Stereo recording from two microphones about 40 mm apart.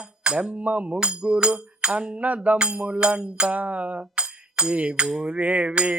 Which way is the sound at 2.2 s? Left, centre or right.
Right.